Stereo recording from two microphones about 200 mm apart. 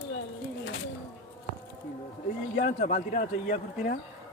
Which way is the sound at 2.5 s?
40° left (ahead or behind).